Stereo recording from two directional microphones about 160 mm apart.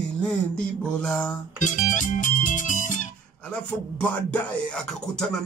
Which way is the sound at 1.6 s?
50° left (ahead or behind).